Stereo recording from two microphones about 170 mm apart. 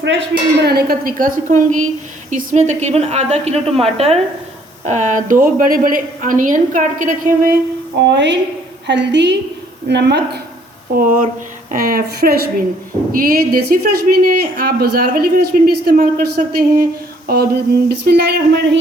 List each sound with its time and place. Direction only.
0.0 s a woman's voice: 90° right; by 7.5 s 50° right (ahead or behind)
8.0 s a woman's voice: 90° right
10.9 s a woman's voice: 50° right (ahead or behind); by 18.8 s 75° right (ahead or behind)